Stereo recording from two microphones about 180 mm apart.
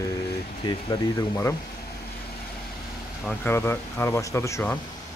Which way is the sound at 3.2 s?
10° left (ahead or behind).